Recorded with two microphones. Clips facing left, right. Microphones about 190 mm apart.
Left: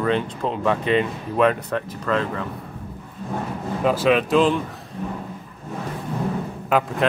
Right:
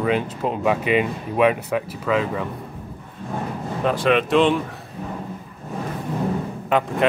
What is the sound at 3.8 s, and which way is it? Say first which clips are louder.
Speech: left 1 dB; 5° left (ahead or behind).